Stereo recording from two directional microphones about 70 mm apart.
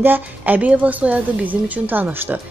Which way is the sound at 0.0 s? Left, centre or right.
Right.